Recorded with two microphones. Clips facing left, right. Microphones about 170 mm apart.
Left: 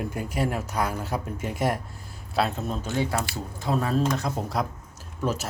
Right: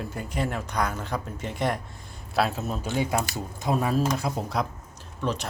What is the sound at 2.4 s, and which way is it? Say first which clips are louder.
Speech: even; 5° right (ahead or behind).